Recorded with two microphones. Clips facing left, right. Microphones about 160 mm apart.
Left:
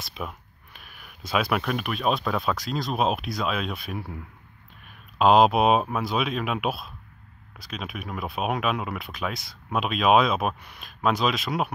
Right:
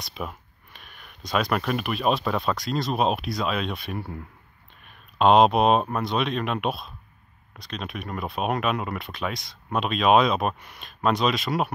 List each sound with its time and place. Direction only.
0.0 s speech: centre (ahead or behind)
5.2 s speech: centre (ahead or behind)